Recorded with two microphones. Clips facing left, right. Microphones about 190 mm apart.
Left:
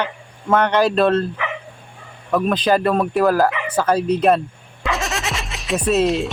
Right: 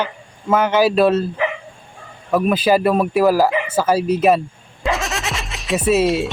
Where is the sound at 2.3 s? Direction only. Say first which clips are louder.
Right 2 dB; 5° right (ahead or behind).